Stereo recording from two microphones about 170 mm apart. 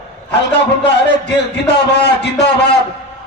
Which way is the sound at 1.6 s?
85° left.